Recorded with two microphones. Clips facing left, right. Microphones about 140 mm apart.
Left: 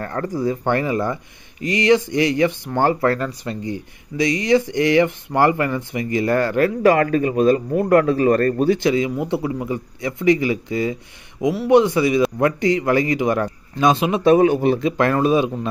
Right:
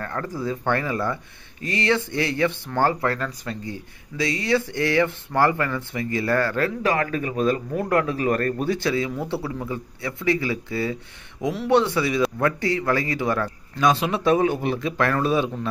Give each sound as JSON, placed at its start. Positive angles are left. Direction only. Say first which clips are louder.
{"t": 0.0, "sound": "speech", "louder": "left 4 dB", "side_deg": 30}
{"t": 0.3, "sound": "speech", "louder": "left 4 dB", "side_deg": 15}
{"t": 7.0, "sound": "a man's voice", "louder": "left 7 dB", "side_deg": 35}
{"t": 8.7, "sound": "speech", "louder": "left 5 dB", "side_deg": 20}
{"t": 14.3, "sound": "a man's voice", "louder": "left 6 dB", "side_deg": 50}
{"t": 14.6, "sound": "speech", "louder": "left 6 dB", "side_deg": 25}